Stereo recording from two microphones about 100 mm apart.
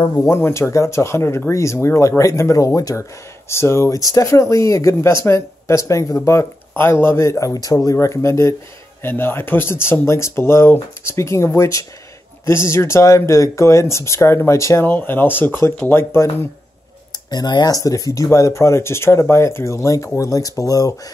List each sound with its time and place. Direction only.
0.1 s speech: 25° left (ahead or behind)
6.7 s speech: 20° left (ahead or behind)
14.9 s speech: 20° left (ahead or behind)
17.3 s speech: 45° left (ahead or behind)